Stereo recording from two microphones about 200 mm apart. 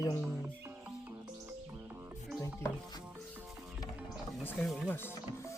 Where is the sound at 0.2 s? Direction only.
5° right (ahead or behind).